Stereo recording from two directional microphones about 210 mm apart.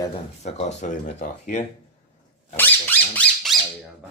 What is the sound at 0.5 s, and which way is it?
Speech, 35° left (ahead or behind).